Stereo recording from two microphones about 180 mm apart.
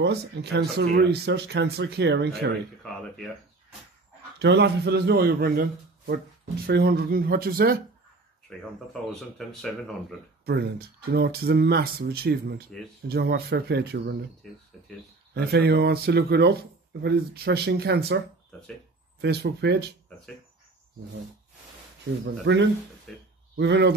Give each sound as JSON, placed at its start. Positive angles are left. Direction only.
{"t": 0.0, "sound": "speech", "side_deg": -70}
{"t": 4.4, "sound": "speech", "side_deg": -70}
{"t": 8.5, "sound": "speech", "side_deg": 5}
{"t": 10.4, "sound": "speech", "side_deg": -65}
{"t": 15.3, "sound": "speech", "side_deg": -65}
{"t": 19.2, "sound": "speech", "side_deg": -65}
{"t": 22.2, "sound": "speech", "side_deg": -75}
{"t": 23.1, "sound": "speech", "side_deg": 5}
{"t": 23.5, "sound": "speech", "side_deg": -70}